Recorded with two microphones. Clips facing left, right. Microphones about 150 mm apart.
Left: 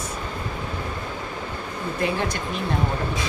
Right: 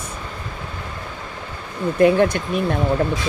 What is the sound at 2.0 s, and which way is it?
Speech, 60° right (ahead or behind).